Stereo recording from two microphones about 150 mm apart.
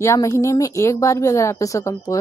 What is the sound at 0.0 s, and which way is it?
A woman's voice, 20° left (ahead or behind).